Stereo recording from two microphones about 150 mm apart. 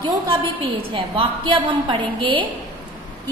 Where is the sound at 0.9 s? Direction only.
35° right (ahead or behind).